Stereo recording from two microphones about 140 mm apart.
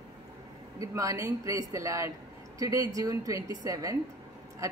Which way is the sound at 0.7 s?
25° right (ahead or behind).